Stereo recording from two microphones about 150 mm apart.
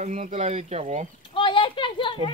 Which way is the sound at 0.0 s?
55° right (ahead or behind).